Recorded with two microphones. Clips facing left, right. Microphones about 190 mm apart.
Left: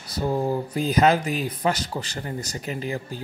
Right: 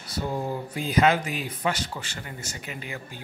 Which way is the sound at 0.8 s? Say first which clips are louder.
Left 2 dB; 40° left (ahead or behind).